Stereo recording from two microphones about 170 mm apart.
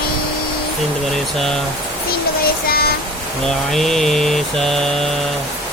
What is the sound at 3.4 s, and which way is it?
Speech, centre (ahead or behind).